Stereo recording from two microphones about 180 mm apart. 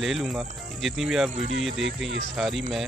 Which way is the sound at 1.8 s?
90° right.